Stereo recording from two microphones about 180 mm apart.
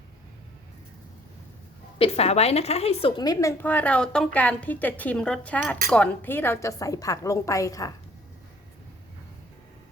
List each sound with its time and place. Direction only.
2.0 s a woman's voice: 35° left (ahead or behind)
3.6 s a woman's voice: 10° left (ahead or behind)